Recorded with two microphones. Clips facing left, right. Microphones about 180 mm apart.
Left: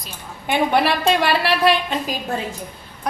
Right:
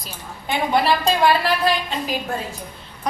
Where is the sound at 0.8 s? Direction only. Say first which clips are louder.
Right 1 dB; 70° left (ahead or behind).